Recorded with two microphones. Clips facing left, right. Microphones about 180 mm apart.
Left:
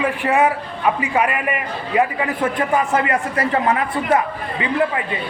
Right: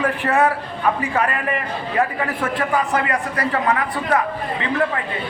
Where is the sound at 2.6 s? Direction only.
25° left (ahead or behind).